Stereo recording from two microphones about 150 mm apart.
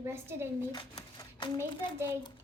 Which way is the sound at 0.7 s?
30° left (ahead or behind).